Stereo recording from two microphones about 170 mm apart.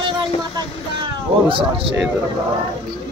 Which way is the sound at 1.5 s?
30° right (ahead or behind).